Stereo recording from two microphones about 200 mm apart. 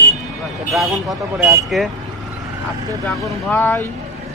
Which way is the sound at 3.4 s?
10° left (ahead or behind).